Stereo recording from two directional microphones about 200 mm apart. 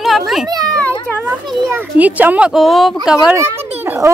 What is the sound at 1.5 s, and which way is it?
A child's voice, 10° right (ahead or behind).